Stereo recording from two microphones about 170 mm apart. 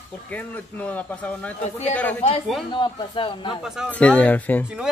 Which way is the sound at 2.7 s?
25° left (ahead or behind).